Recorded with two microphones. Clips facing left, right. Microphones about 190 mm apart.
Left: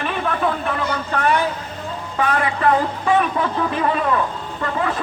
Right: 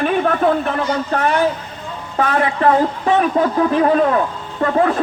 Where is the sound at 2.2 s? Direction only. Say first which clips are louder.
Right 3 dB; 40° right (ahead or behind).